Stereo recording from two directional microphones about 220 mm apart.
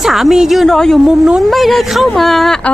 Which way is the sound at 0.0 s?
Centre (ahead or behind).